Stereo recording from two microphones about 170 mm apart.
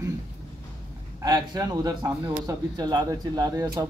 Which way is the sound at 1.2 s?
25° right (ahead or behind).